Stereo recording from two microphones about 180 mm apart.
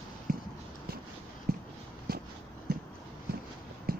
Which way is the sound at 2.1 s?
60° right (ahead or behind).